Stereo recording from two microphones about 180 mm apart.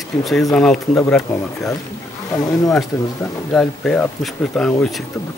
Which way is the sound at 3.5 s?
5° left (ahead or behind).